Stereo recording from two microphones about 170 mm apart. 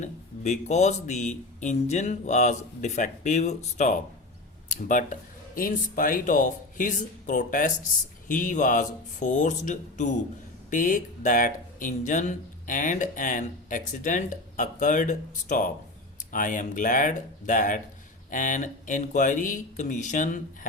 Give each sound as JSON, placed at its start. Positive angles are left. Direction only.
{"t": 0.0, "sound": "speech", "side_deg": 40}